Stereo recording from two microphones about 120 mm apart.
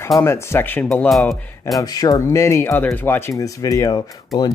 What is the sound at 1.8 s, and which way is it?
Speech, 30° left (ahead or behind).